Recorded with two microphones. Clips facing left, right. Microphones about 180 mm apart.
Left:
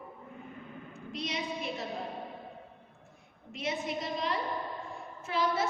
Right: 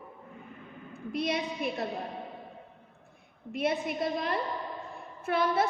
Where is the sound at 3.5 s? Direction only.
55° right (ahead or behind).